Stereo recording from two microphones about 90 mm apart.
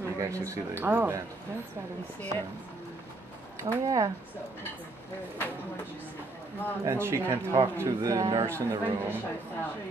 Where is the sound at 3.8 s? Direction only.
40° right (ahead or behind).